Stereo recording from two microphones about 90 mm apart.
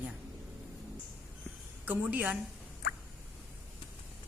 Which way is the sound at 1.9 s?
15° right (ahead or behind).